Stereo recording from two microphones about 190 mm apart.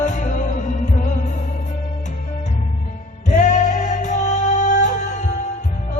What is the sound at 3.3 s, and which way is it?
Music, 40° left (ahead or behind).